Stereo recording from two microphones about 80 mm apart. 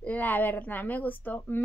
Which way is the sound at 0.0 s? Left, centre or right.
Left.